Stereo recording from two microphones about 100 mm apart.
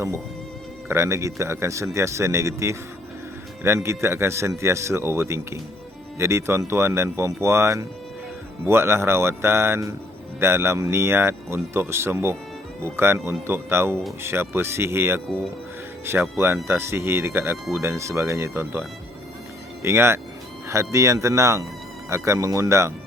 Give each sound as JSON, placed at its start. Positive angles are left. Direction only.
{"t": 0.9, "sound": "speech", "side_deg": -25}
{"t": 3.8, "sound": "speech", "side_deg": -25}